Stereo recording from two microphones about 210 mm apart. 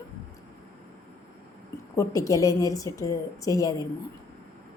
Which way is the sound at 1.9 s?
15° left (ahead or behind).